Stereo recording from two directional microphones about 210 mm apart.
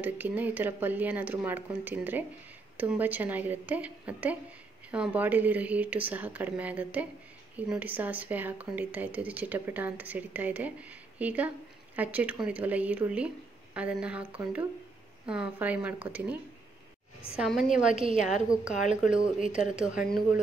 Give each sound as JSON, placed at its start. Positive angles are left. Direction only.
{"t": 0.0, "sound": "speech", "side_deg": -10}
{"t": 17.4, "sound": "speech", "side_deg": 0}
{"t": 18.1, "sound": "speech", "side_deg": 35}
{"t": 19.1, "sound": "speech", "side_deg": -25}
{"t": 19.5, "sound": "speech", "side_deg": -5}